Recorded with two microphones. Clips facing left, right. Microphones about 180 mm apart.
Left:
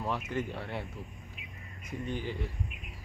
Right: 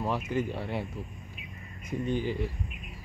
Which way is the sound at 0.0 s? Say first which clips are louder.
Right 4 dB; 10° right (ahead or behind).